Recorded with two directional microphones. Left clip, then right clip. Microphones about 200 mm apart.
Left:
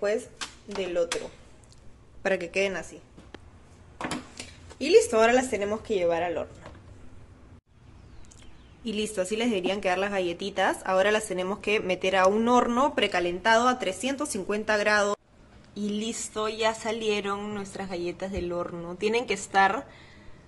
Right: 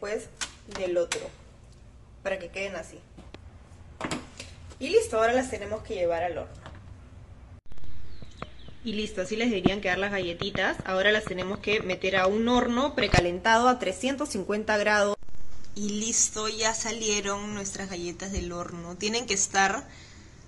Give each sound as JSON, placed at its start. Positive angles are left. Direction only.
{"t": 2.2, "sound": "speech", "side_deg": 45}
{"t": 4.7, "sound": "speech", "side_deg": 45}
{"t": 8.8, "sound": "speech", "side_deg": 10}
{"t": 10.5, "sound": "speech", "side_deg": 0}
{"t": 15.7, "sound": "speech", "side_deg": 10}